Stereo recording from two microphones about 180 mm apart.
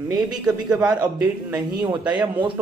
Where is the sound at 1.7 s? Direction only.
25° right (ahead or behind).